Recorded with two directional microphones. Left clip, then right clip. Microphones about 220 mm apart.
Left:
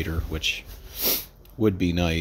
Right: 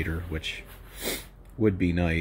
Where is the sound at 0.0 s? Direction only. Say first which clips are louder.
Left 3 dB; 10° left (ahead or behind).